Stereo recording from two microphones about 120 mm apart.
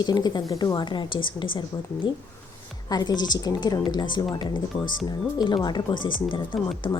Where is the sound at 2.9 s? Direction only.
35° left (ahead or behind).